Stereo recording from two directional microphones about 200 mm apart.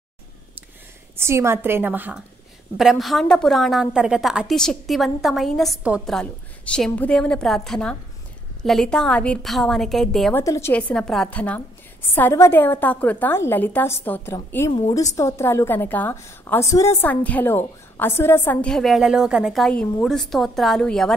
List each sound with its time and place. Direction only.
1.1 s a woman's voice: 15° right (ahead or behind)
10.4 s a woman's voice: 15° left (ahead or behind)